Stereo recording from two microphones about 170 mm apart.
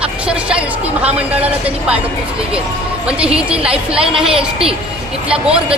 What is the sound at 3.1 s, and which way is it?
A woman's voice, 5° right (ahead or behind).